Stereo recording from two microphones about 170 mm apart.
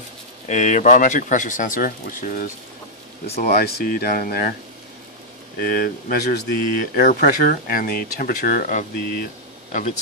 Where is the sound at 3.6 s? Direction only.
65° left (ahead or behind).